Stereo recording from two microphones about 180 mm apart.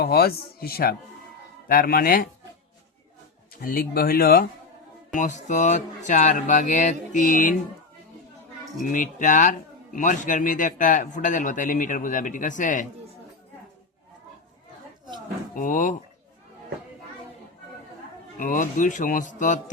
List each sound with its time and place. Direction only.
0.0 s a man's voice: 60° left (ahead or behind)
3.6 s speech: 55° left (ahead or behind)
5.1 s a man's voice: 45° left (ahead or behind)
8.8 s a man's voice: 45° left (ahead or behind)
15.5 s a man's voice: 45° left (ahead or behind)
18.3 s a man's voice: 50° left (ahead or behind)